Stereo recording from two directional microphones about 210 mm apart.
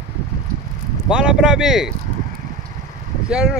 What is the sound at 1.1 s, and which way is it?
Speech, 5° right (ahead or behind).